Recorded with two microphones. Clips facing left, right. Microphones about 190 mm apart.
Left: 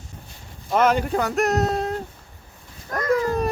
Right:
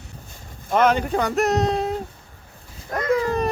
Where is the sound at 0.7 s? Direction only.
5° left (ahead or behind).